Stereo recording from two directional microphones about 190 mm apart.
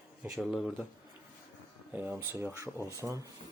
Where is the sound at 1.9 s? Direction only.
10° right (ahead or behind).